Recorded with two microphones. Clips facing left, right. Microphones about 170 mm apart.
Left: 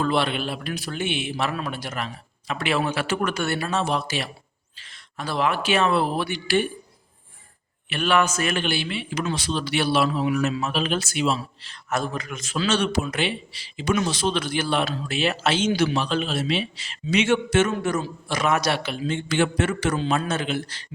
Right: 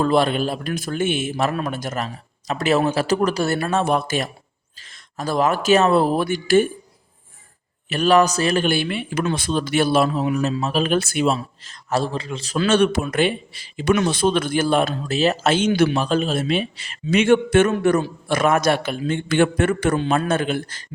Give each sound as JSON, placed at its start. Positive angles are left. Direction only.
{"t": 0.0, "sound": "speech", "side_deg": -40}
{"t": 7.9, "sound": "a man's voice", "side_deg": -40}
{"t": 8.6, "sound": "speech", "side_deg": -50}
{"t": 12.5, "sound": "speech", "side_deg": -55}